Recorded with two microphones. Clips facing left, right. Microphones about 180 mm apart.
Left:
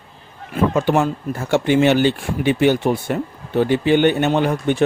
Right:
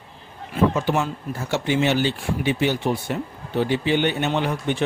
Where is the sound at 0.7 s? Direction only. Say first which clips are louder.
Left 6 dB; 55° left (ahead or behind).